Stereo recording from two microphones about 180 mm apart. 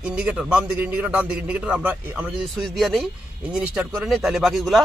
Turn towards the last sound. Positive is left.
turn(degrees=0)  # may be behind; listen again after turning